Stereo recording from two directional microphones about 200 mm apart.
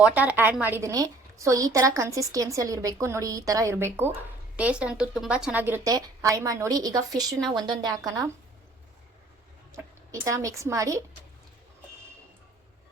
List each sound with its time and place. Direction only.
0.0 s a woman's voice: 5° right (ahead or behind)
9.7 s speech: 15° right (ahead or behind)